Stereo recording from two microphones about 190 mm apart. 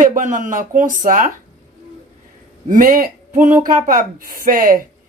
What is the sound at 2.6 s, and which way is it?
Speech, 45° right (ahead or behind).